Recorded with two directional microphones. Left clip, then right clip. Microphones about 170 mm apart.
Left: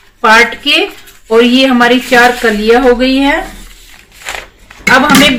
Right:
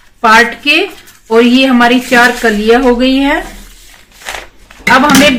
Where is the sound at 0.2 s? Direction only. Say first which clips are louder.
Even; 25° right (ahead or behind).